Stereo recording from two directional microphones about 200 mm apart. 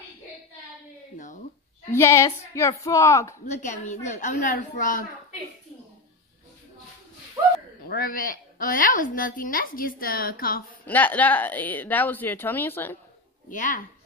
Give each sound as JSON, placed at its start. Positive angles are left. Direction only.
{"t": 1.1, "sound": "a sound", "side_deg": 40}
{"t": 1.9, "sound": "a woman's voice", "side_deg": 15}
{"t": 3.4, "sound": "a woman's voice", "side_deg": 35}
{"t": 7.8, "sound": "a woman's voice", "side_deg": 45}
{"t": 10.9, "sound": "a woman's voice", "side_deg": 10}
{"t": 13.5, "sound": "a woman's voice", "side_deg": 40}